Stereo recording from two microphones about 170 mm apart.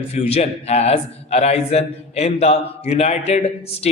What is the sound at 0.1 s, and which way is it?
A man's voice, 40° left (ahead or behind).